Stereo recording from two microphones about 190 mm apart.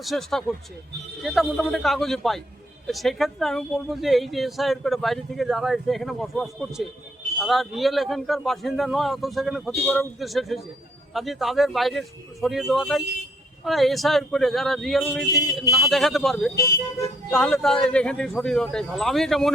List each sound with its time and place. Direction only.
0.0 s a woman's voice: centre (ahead or behind)
16.6 s speech: 20° left (ahead or behind)
17.3 s a woman's voice: 5° left (ahead or behind)